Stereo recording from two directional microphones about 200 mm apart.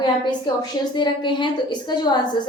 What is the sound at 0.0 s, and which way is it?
A woman's voice, 20° left (ahead or behind).